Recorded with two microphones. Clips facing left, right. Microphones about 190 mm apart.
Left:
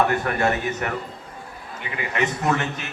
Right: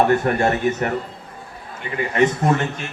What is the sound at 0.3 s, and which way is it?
Speech, 30° right (ahead or behind).